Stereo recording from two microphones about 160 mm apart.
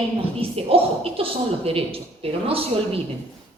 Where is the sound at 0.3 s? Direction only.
35° right (ahead or behind).